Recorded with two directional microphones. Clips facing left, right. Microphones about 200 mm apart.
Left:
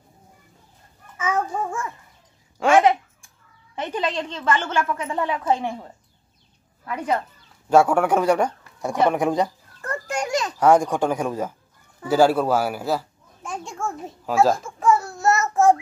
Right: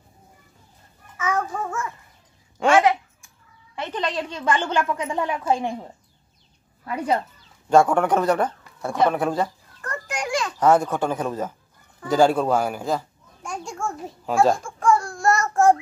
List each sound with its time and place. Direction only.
1.1 s babbling: 25° left (ahead or behind)
2.7 s a sound: 25° left (ahead or behind)
3.7 s a child's voice: 15° left (ahead or behind)
4.0 s a woman's voice: 5° right (ahead or behind)
7.7 s speech: 10° left (ahead or behind)
9.8 s children playing: 30° left (ahead or behind)
10.2 s a sound: 20° left (ahead or behind)
10.6 s speech: 10° left (ahead or behind)
12.1 s a sound: 5° left (ahead or behind)